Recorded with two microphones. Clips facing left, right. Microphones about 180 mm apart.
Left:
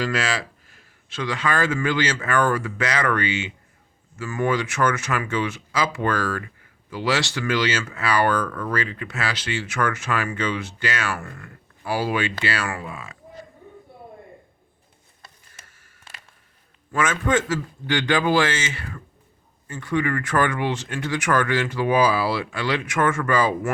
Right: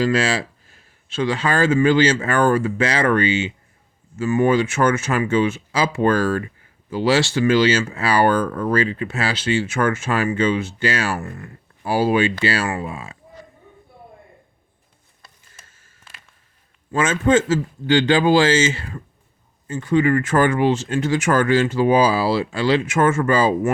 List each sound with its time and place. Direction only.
0.0 s speech: 30° right (ahead or behind)
15.6 s a sound: 25° right (ahead or behind)
16.9 s speech: 25° right (ahead or behind)